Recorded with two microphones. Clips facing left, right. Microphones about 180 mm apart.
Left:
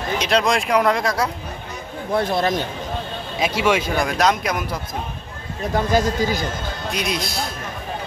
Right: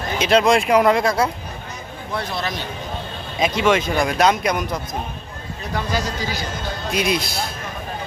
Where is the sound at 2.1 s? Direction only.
50° left (ahead or behind).